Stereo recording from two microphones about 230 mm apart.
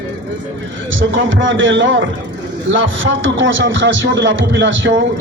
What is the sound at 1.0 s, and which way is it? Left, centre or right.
A man's voice, right.